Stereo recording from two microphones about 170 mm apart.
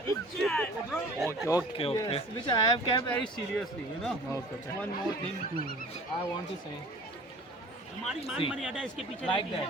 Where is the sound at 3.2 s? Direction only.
Centre (ahead or behind).